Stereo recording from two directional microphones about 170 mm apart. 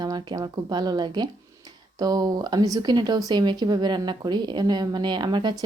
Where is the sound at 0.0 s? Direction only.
25° right (ahead or behind).